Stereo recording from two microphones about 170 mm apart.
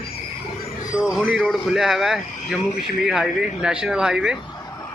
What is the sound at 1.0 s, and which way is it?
Speech, 5° right (ahead or behind).